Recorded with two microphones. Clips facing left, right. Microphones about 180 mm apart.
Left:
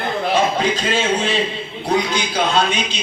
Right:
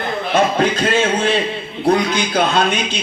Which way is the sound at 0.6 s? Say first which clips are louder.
Right 3 dB; 55° right (ahead or behind).